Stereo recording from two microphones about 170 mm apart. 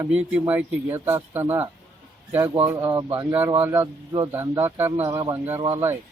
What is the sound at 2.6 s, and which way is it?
Speech, 30° right (ahead or behind).